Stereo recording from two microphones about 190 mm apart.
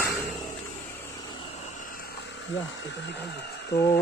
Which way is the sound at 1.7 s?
45° left (ahead or behind).